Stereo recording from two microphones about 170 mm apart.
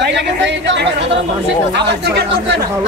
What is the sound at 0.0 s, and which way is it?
Speech, 90° right.